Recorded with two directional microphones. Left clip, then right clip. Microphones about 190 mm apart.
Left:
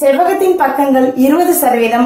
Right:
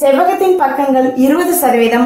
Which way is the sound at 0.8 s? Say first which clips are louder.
Left 1 dB; 20° right (ahead or behind).